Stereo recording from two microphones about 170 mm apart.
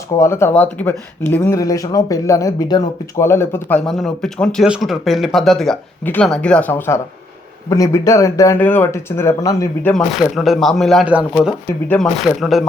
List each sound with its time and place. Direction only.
0.2 s speech: 15° left (ahead or behind)
9.9 s speech: centre (ahead or behind)